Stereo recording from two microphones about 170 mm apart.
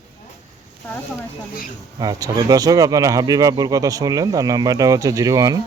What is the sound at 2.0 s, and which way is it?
Speech, 20° right (ahead or behind).